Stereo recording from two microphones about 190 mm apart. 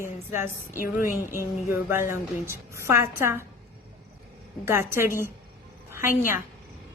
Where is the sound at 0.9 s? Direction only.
45° left (ahead or behind).